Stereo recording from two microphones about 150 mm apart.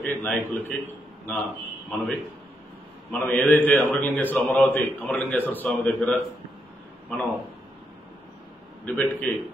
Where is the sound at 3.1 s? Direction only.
10° left (ahead or behind).